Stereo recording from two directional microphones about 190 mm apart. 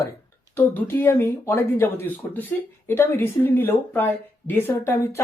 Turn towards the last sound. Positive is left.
turn(degrees=15)  # may be behind; listen again after turning